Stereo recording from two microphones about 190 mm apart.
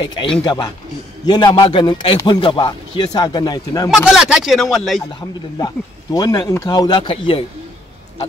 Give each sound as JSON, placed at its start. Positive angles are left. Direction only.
{"t": 0.0, "sound": "a man's voice", "side_deg": 25}
{"t": 3.9, "sound": "speech", "side_deg": -5}
{"t": 6.1, "sound": "a man's voice", "side_deg": 20}